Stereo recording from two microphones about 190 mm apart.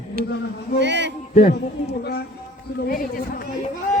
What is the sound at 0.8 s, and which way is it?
Speech, 65° right (ahead or behind).